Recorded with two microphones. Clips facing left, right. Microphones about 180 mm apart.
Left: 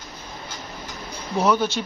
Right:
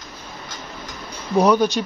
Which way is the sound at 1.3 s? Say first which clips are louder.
Right 5 dB; 15° right (ahead or behind).